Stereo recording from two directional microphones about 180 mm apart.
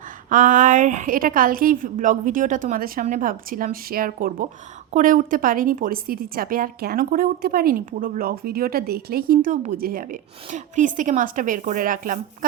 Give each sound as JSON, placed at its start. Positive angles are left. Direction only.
{"t": 0.3, "sound": "a woman's voice", "side_deg": -45}